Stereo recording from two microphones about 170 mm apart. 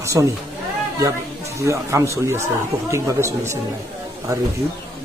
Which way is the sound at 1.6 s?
15° right (ahead or behind).